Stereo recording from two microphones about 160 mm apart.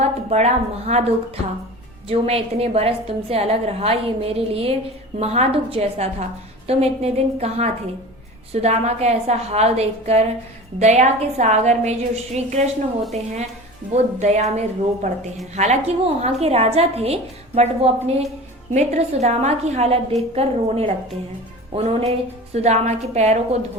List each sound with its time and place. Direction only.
0.0 s a woman's voice: 45° right (ahead or behind)
2.0 s a woman's voice: 40° right (ahead or behind)